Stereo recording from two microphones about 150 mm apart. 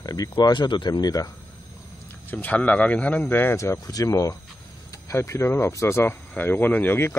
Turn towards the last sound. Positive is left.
turn(degrees=15)  # may be behind; listen again after turning